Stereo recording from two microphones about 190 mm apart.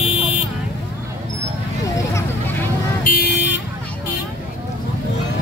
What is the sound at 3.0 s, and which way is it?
Vehicle, 55° left (ahead or behind).